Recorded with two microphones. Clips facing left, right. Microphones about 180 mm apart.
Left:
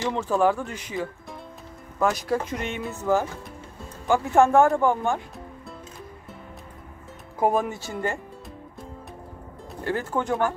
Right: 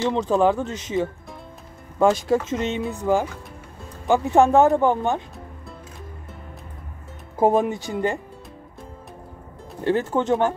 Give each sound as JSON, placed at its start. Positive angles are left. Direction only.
{"t": 0.1, "sound": "speech", "side_deg": -20}
{"t": 7.3, "sound": "speech", "side_deg": -20}
{"t": 9.8, "sound": "speech", "side_deg": -20}